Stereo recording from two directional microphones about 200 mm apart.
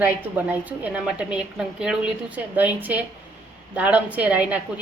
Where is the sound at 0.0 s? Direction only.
10° right (ahead or behind).